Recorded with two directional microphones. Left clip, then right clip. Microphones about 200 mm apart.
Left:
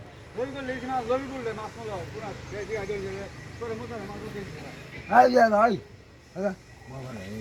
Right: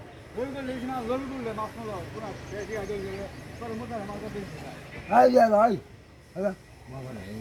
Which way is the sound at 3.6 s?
50° right (ahead or behind).